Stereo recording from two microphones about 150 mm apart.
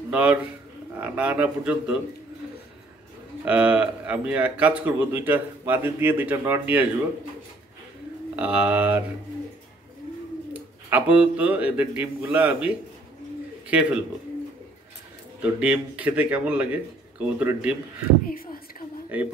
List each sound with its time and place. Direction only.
0.1 s a man's voice: 10° right (ahead or behind)
3.4 s speech: 10° right (ahead or behind)
8.4 s speech: 10° right (ahead or behind)
10.5 s a man's voice: 10° right (ahead or behind)
13.7 s speech: 10° right (ahead or behind)
15.4 s speech: 10° right (ahead or behind)
18.2 s a sound: 75° left (ahead or behind)